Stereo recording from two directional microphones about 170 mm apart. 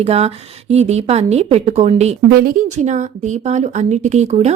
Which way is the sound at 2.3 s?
60° right (ahead or behind).